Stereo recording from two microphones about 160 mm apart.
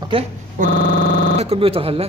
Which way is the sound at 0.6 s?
55° right (ahead or behind).